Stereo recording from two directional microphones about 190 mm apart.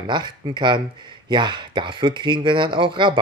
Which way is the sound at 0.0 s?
25° right (ahead or behind).